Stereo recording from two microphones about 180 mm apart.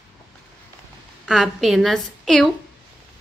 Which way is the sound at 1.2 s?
Centre (ahead or behind).